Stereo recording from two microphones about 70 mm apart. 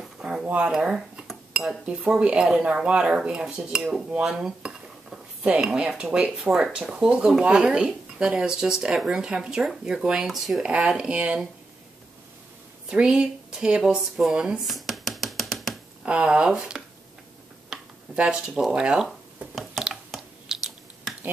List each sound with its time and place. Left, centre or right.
0.2 s a sound: centre
0.7 s cutlery: centre
1.9 s dishes: centre
10.6 s dishes: centre
12.9 s speech: centre
16.1 s dishes: centre
18.1 s dishes: centre
19.0 s chewing: centre